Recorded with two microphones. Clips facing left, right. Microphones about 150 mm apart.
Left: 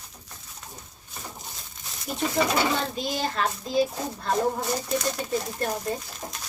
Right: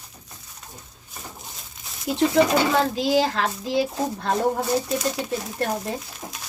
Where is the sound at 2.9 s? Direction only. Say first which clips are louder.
Right 8 dB; 90° right; by 5.8 s 70° right (ahead or behind).